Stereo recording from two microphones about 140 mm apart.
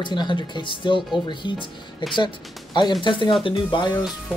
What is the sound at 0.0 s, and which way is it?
Speech, 35° left (ahead or behind).